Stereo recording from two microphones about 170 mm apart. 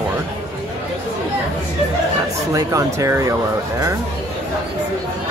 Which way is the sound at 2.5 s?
20° right (ahead or behind).